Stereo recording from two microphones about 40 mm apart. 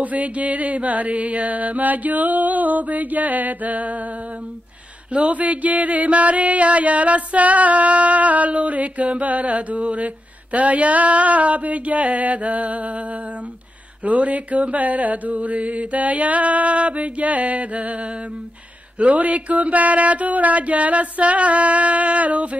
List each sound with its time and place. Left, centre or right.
0.0 s music: right
5.1 s music: right
14.0 s music: right